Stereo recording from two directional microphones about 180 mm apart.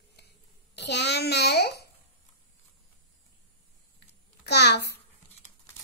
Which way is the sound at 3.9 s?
70° left (ahead or behind).